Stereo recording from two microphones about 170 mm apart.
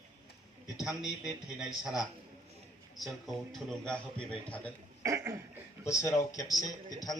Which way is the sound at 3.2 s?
Centre (ahead or behind).